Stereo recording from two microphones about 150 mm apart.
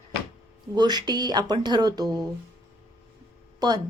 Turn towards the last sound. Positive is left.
turn(degrees=-25)  # may be behind; listen again after turning